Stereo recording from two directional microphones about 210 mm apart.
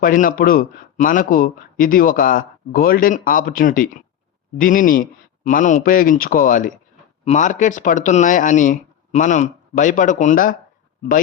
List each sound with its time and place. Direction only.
0.0 s a man's voice: 40° left (ahead or behind)